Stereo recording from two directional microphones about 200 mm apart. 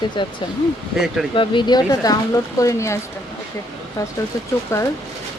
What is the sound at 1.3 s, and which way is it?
Speech, 25° left (ahead or behind).